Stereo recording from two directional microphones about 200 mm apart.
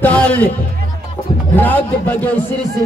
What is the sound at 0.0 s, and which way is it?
Music, 5° left (ahead or behind).